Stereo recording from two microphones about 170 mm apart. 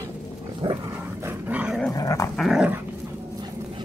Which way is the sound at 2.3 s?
Centre (ahead or behind).